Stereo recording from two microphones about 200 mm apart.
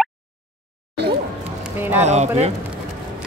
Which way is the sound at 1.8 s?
10° right (ahead or behind).